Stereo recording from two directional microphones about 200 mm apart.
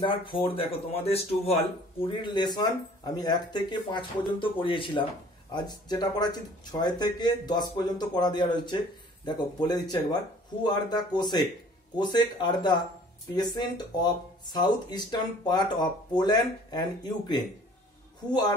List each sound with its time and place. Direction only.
0.0 s speech: 25° left (ahead or behind)